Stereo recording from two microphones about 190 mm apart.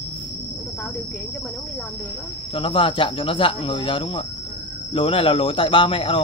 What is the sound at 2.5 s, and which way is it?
Speech, 30° left (ahead or behind).